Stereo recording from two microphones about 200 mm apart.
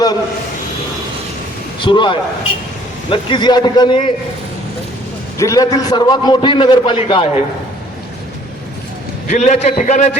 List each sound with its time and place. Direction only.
1.8 s a man's voice: 25° left (ahead or behind)
5.4 s a man's voice: 15° left (ahead or behind)
9.3 s a man's voice: 35° left (ahead or behind)